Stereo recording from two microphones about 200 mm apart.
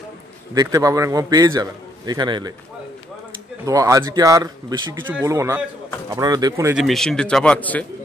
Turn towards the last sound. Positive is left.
turn(degrees=5)  # may be behind; listen again after turning